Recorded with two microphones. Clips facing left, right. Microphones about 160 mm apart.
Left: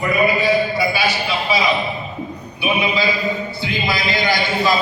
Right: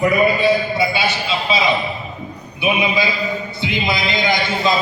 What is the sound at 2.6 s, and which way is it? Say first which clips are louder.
A man's voice: right 1 dB; 20° right (ahead or behind).